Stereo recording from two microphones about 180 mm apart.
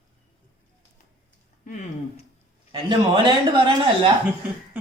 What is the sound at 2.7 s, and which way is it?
A man's voice, 25° right (ahead or behind).